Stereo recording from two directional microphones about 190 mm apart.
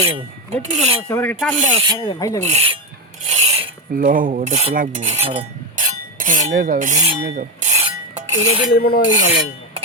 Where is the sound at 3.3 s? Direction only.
35° right (ahead or behind).